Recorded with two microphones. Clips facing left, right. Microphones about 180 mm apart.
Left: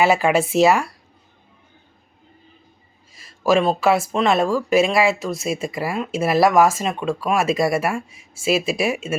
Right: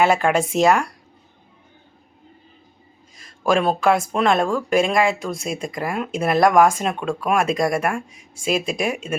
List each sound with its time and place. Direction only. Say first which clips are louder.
0.0 s speech: left 1 dB; 5° left (ahead or behind)
3.2 s speech: left 2 dB; 5° left (ahead or behind)